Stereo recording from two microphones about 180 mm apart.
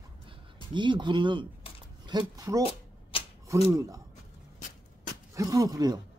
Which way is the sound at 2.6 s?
30° left (ahead or behind).